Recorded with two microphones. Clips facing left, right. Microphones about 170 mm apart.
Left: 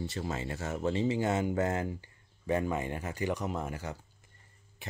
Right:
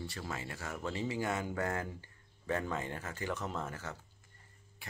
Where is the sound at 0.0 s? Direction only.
20° left (ahead or behind).